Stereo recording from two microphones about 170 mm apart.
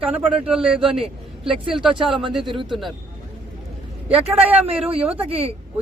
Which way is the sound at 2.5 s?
30° right (ahead or behind).